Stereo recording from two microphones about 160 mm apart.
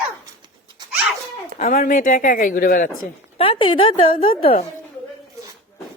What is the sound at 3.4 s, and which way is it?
A woman's voice, 35° left (ahead or behind).